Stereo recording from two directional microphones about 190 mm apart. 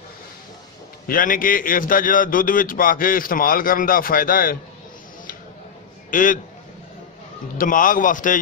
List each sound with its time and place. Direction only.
1.0 s a man's voice: 45° left (ahead or behind)
6.0 s a man's voice: 45° left (ahead or behind)
7.5 s a man's voice: 45° left (ahead or behind)